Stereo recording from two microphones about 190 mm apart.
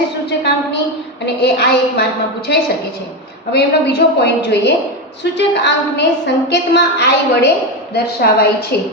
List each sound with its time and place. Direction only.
0.3 s a woman's voice: 65° left (ahead or behind)